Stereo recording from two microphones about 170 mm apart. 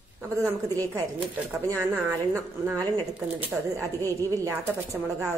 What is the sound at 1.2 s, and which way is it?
Speech, 15° right (ahead or behind).